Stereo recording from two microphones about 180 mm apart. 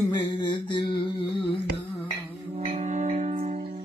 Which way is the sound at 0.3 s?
25° left (ahead or behind).